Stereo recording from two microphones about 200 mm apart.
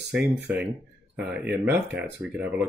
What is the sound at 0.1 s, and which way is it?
Speech, 5° right (ahead or behind).